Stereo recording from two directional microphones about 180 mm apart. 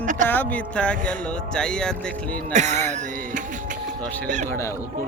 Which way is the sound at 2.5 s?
40° right (ahead or behind).